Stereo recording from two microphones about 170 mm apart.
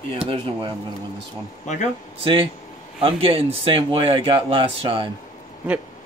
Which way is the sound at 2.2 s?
30° right (ahead or behind).